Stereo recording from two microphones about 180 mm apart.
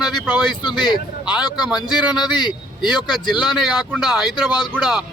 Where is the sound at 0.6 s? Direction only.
25° left (ahead or behind).